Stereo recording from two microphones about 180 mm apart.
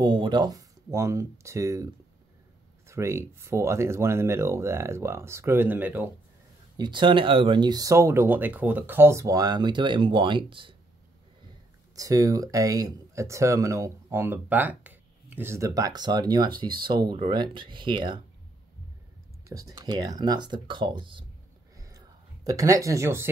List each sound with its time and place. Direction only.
0.0 s speech: 25° right (ahead or behind)
2.9 s speech: 15° right (ahead or behind)
6.8 s speech: 25° right (ahead or behind)
11.9 s speech: 20° right (ahead or behind)
19.5 s speech: 20° right (ahead or behind)
21.7 s a sound: 20° right (ahead or behind)